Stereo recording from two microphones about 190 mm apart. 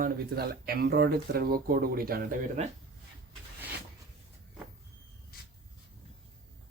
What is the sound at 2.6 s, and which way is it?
Speech, 35° right (ahead or behind).